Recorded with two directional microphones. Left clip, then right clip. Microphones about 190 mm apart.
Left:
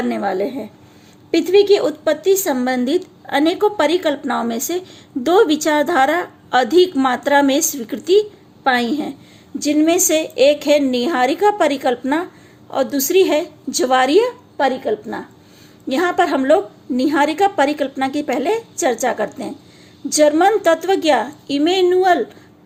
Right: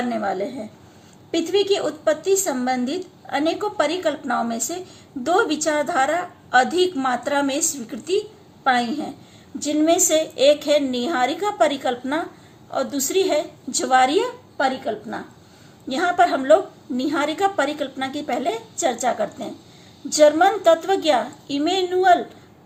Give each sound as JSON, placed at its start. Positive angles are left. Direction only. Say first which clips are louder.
{"t": 0.1, "sound": "a woman's voice", "louder": "left 4 dB", "side_deg": 45}